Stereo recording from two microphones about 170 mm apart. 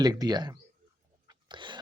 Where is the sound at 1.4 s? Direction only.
30° right (ahead or behind).